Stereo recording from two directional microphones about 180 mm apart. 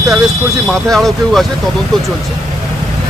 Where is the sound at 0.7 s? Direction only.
Centre (ahead or behind).